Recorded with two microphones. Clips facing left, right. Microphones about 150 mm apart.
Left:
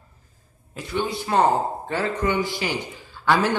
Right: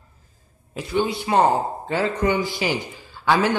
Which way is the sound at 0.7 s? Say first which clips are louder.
Right 4 dB; 15° right (ahead or behind).